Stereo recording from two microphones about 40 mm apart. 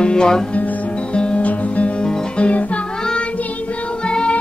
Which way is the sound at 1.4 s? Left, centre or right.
Left.